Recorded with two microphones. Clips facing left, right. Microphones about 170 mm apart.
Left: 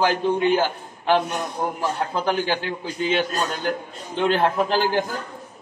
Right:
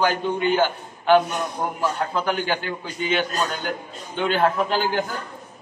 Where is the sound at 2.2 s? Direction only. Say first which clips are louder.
Left 2 dB; 35° left (ahead or behind).